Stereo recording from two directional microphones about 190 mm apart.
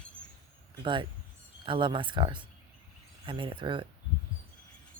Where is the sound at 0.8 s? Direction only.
25° right (ahead or behind).